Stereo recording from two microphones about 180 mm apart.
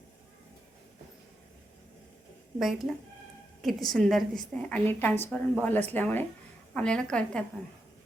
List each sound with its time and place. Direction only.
2.6 s a woman's voice: centre (ahead or behind)